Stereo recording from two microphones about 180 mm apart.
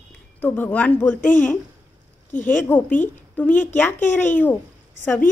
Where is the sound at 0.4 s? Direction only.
10° left (ahead or behind).